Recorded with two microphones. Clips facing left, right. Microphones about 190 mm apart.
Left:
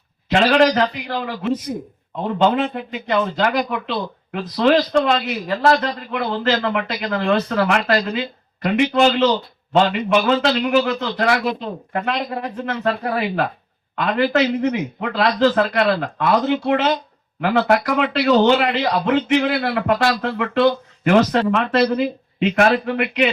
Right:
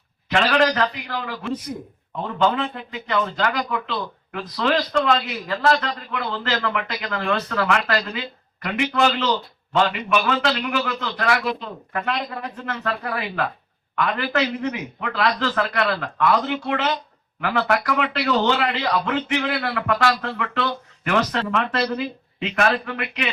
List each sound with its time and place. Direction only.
0.3 s a man's voice: 25° left (ahead or behind)